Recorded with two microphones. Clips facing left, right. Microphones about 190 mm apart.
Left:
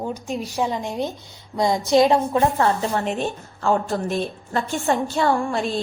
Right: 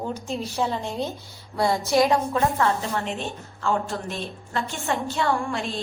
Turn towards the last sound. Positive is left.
turn(degrees=40)  # may be behind; listen again after turning